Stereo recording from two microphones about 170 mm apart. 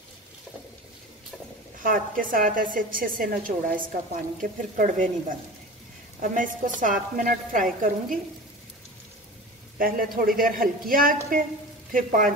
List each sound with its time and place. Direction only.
1.8 s a woman's voice: 55° right (ahead or behind)
6.2 s speech: 50° right (ahead or behind)
9.8 s a woman's voice: 55° right (ahead or behind)